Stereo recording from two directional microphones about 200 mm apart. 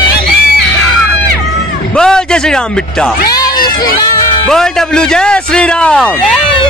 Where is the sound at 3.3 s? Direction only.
20° left (ahead or behind).